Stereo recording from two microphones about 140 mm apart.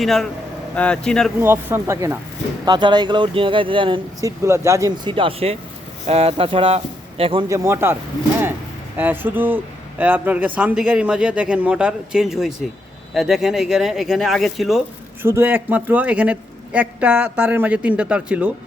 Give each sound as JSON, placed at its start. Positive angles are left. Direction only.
{"t": 0.0, "sound": "speech", "side_deg": 0}
{"t": 1.4, "sound": "speech", "side_deg": -20}
{"t": 2.6, "sound": "speech", "side_deg": -30}
{"t": 4.2, "sound": "speech", "side_deg": -20}
{"t": 5.0, "sound": "speech", "side_deg": -40}
{"t": 7.4, "sound": "speech", "side_deg": -20}
{"t": 9.0, "sound": "a man's voice", "side_deg": -15}
{"t": 15.2, "sound": "a man's voice", "side_deg": -15}